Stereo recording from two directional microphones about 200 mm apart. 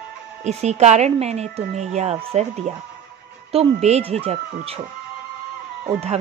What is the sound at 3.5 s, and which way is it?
Speech, 30° right (ahead or behind).